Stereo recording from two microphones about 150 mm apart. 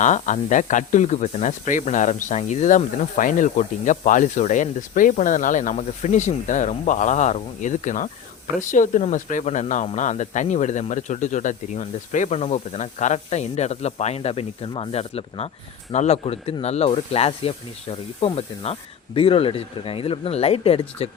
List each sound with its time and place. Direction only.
0.0 s speech: 55° left (ahead or behind)